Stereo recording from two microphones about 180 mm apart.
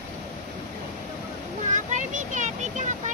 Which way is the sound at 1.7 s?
45° right (ahead or behind).